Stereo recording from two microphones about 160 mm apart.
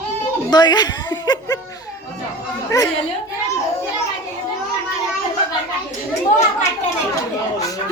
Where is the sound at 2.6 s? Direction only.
20° left (ahead or behind).